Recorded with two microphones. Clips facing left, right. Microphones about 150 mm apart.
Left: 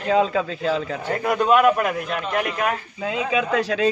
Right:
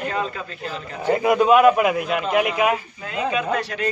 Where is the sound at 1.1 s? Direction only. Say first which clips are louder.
Right 3 dB; 5° right (ahead or behind).